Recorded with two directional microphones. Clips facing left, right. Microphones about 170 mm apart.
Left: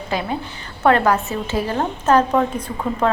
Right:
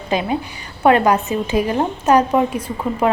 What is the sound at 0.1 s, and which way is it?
A woman's voice, 20° right (ahead or behind).